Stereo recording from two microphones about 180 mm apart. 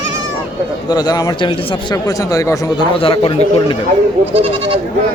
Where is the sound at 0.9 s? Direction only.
20° left (ahead or behind).